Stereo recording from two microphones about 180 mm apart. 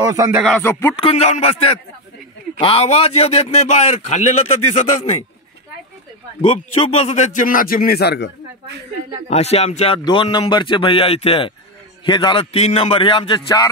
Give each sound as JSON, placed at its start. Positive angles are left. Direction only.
{"t": 0.0, "sound": "speech", "side_deg": -20}
{"t": 0.6, "sound": "music", "side_deg": 10}
{"t": 0.9, "sound": "a man's voice", "side_deg": 30}
{"t": 6.4, "sound": "speech", "side_deg": 30}
{"t": 9.3, "sound": "a man's voice", "side_deg": 35}
{"t": 10.0, "sound": "a man's voice", "side_deg": 25}